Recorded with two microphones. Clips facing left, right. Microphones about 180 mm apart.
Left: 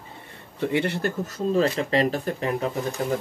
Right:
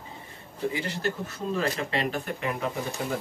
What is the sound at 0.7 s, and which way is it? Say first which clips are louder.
Speech: left 5 dB; 60° left (ahead or behind).